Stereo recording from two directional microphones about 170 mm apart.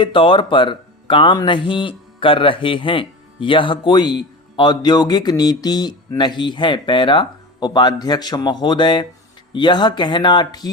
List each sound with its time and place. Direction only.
0.0 s speech: 30° left (ahead or behind)